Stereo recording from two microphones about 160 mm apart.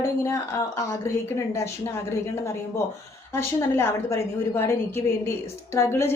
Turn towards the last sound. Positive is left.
turn(degrees=15)  # may be behind; listen again after turning